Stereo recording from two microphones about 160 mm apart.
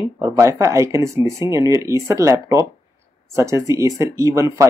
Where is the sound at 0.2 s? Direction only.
20° right (ahead or behind).